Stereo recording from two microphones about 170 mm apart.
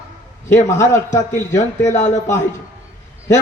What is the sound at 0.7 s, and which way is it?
Speech, 20° left (ahead or behind).